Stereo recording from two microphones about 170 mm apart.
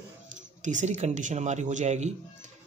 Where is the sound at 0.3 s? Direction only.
45° right (ahead or behind).